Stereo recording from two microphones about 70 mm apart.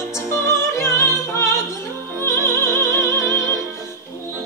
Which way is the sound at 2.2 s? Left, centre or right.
Left.